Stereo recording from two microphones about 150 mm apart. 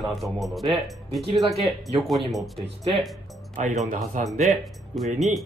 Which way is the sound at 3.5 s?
55° right (ahead or behind).